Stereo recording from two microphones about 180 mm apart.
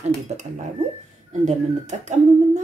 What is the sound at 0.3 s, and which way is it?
A woman's voice, 40° right (ahead or behind).